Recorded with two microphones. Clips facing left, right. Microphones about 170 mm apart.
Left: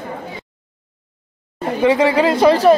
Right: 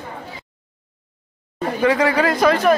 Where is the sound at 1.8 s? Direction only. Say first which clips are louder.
Left 3 dB; 25° left (ahead or behind).